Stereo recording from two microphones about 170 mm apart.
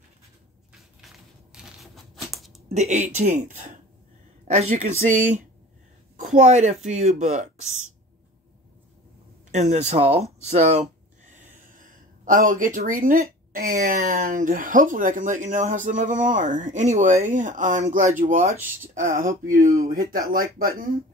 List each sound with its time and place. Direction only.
1.0 s a sound: 5° right (ahead or behind)
2.7 s a woman's voice: 45° right (ahead or behind)
9.5 s speech: 45° right (ahead or behind); by 20.9 s 60° right (ahead or behind)